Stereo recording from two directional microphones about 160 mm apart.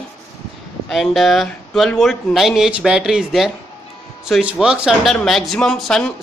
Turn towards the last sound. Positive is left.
turn(degrees=5)  # may be behind; listen again after turning